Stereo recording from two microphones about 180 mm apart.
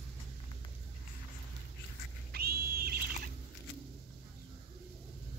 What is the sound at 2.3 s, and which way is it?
Wild animals, 60° right (ahead or behind).